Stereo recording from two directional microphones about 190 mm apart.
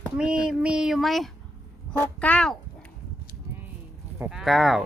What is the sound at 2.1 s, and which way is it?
Speech, 5° left (ahead or behind).